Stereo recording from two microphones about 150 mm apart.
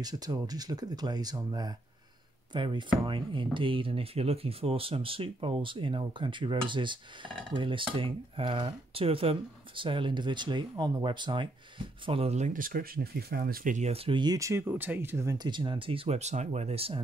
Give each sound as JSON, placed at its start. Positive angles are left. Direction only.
{"t": 0.0, "sound": "speech", "side_deg": -25}
{"t": 12.1, "sound": "speech", "side_deg": -40}
{"t": 13.7, "sound": "speech", "side_deg": -45}